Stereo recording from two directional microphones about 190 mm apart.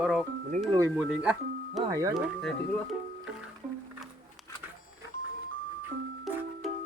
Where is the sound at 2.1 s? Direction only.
Centre (ahead or behind).